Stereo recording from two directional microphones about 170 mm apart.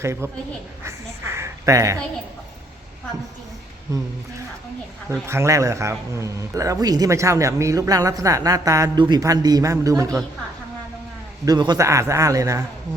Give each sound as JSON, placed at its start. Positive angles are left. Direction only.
{"t": 0.0, "sound": "a man's voice", "side_deg": -15}
{"t": 0.9, "sound": "a sound", "side_deg": -15}
{"t": 3.9, "sound": "speech", "side_deg": -20}
{"t": 5.2, "sound": "a man's voice", "side_deg": -15}
{"t": 11.4, "sound": "a man's voice", "side_deg": -25}